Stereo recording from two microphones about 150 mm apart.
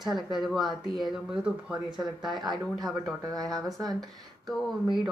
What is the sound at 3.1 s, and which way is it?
Speech, 25° right (ahead or behind).